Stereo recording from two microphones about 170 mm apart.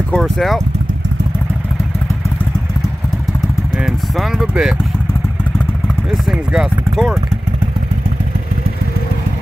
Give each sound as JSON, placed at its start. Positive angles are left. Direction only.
{"t": 0.1, "sound": "speech", "side_deg": 0}
{"t": 3.7, "sound": "speech", "side_deg": -5}
{"t": 6.2, "sound": "speech", "side_deg": -5}